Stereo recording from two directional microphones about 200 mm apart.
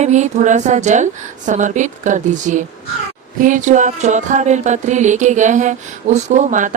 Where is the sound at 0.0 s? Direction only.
35° right (ahead or behind).